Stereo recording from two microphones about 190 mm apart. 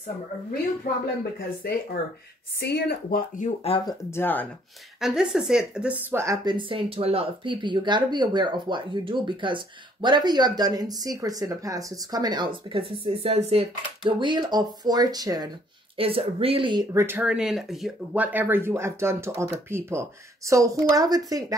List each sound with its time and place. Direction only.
1.6 s speech: 55° left (ahead or behind); by 3.9 s 30° left (ahead or behind)
4.1 s speech: 10° left (ahead or behind)
5.0 s speech: 5° right (ahead or behind); by 16.8 s 25° right (ahead or behind)
16.9 s speech: 10° right (ahead or behind)